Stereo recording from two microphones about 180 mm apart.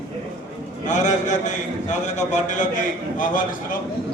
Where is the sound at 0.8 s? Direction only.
45° left (ahead or behind).